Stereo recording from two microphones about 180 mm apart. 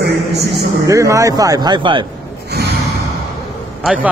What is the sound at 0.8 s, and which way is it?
Speech, 15° right (ahead or behind).